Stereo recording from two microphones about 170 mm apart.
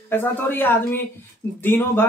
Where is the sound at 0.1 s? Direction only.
10° left (ahead or behind).